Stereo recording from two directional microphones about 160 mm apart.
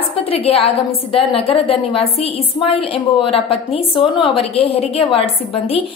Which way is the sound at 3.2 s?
35° left (ahead or behind).